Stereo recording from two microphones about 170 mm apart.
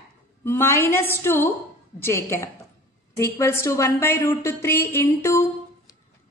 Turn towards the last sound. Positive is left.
turn(degrees=15)  # may be behind; listen again after turning